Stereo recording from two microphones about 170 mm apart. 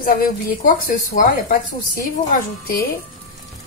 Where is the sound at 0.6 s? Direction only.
55° left (ahead or behind).